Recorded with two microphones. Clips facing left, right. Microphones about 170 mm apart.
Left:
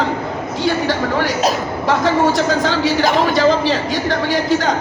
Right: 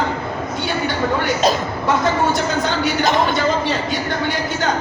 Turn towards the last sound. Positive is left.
turn(degrees=90)